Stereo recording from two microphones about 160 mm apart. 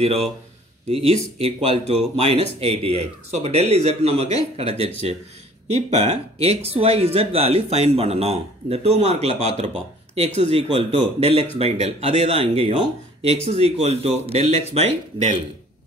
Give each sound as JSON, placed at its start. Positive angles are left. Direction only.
{"t": 0.0, "sound": "speech", "side_deg": -40}